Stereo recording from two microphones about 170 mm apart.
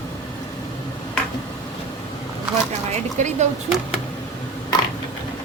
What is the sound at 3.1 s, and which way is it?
Speech, 45° right (ahead or behind).